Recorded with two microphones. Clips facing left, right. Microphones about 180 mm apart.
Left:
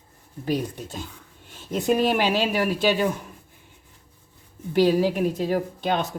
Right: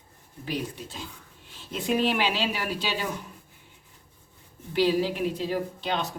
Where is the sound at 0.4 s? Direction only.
45° left (ahead or behind).